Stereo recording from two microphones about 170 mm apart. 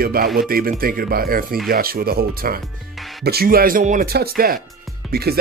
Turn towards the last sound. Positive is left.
turn(degrees=-65)  # may be behind; listen again after turning